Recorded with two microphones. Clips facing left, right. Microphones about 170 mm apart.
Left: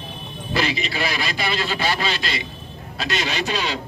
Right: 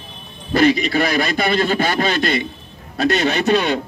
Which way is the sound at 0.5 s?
50° right (ahead or behind).